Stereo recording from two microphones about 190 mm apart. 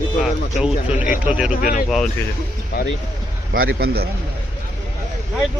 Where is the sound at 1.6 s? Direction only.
45° left (ahead or behind).